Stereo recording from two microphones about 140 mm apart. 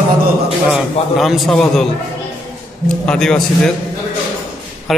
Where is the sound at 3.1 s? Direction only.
5° left (ahead or behind).